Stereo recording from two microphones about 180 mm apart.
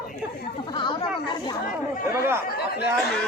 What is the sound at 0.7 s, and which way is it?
Speech, 25° left (ahead or behind).